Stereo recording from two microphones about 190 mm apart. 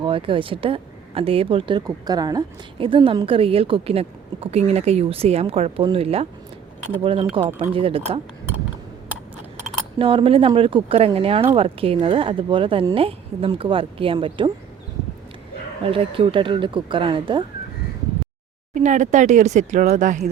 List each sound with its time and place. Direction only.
0.0 s speech: 25° right (ahead or behind)
10.0 s speech: 30° right (ahead or behind)
15.8 s speech: 30° right (ahead or behind)
18.7 s speech: 40° right (ahead or behind)